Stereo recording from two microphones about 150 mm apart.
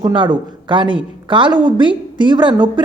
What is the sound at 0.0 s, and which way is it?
Speech, 30° right (ahead or behind).